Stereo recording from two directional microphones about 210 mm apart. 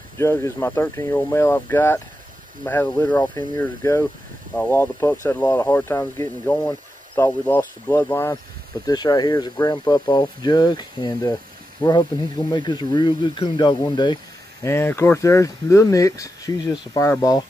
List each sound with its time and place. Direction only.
0.2 s speech: 15° left (ahead or behind)